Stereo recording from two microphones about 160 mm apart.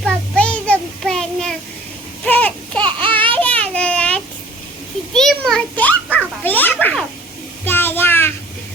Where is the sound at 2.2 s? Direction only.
10° left (ahead or behind).